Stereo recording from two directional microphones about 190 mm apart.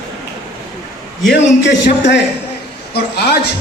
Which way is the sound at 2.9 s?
55° left (ahead or behind).